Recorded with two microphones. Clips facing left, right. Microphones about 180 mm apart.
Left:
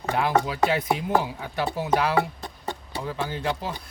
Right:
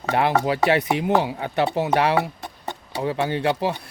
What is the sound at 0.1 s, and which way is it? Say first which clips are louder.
Speech: right 3 dB; 70° right (ahead or behind).